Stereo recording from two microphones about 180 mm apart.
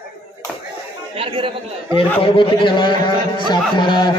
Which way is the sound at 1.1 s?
30° right (ahead or behind).